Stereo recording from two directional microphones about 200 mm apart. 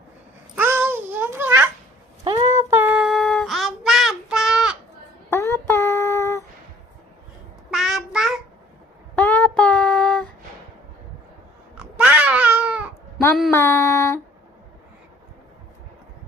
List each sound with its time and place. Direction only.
0.5 s babbling: 10° right (ahead or behind)
2.2 s a sound: 25° right (ahead or behind)
2.6 s child singing: 10° right (ahead or behind)
5.3 s child singing: 10° left (ahead or behind)
7.7 s child singing: centre (ahead or behind)
9.1 s child singing: 10° left (ahead or behind)
11.8 s cat: 5° right (ahead or behind)
13.5 s a sound: 15° left (ahead or behind)